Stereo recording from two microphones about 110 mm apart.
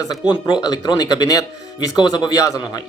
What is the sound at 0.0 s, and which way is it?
Speech, 35° left (ahead or behind).